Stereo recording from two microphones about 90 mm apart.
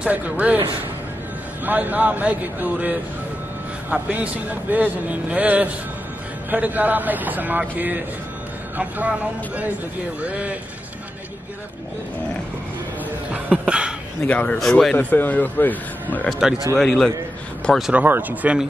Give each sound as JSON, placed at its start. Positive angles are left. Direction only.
{"t": 0.0, "sound": "a man's voice", "side_deg": -15}
{"t": 1.6, "sound": "a man's voice", "side_deg": -20}
{"t": 10.2, "sound": "a man's voice", "side_deg": -15}
{"t": 13.3, "sound": "a sound", "side_deg": -15}
{"t": 14.2, "sound": "speech", "side_deg": 15}
{"t": 14.6, "sound": "speech", "side_deg": 5}
{"t": 15.0, "sound": "speech", "side_deg": 20}
{"t": 16.3, "sound": "speech", "side_deg": -5}
{"t": 17.9, "sound": "a man's voice", "side_deg": -20}